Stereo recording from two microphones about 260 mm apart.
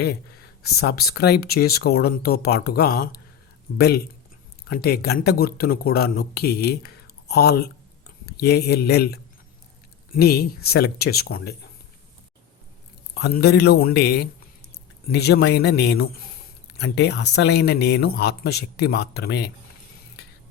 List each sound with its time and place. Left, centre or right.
0.6 s speech: left
13.1 s speech: left